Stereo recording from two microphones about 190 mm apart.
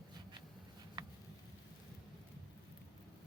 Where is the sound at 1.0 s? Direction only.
20° right (ahead or behind).